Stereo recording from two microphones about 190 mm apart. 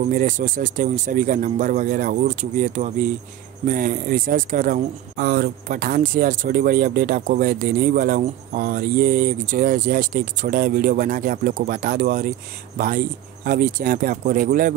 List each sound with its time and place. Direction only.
0.1 s speech: 45° right (ahead or behind)